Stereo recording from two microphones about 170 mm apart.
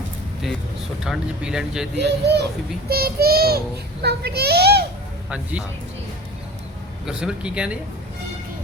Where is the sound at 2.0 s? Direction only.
80° right.